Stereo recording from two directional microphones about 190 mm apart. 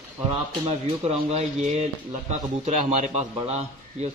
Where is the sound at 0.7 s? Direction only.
35° right (ahead or behind).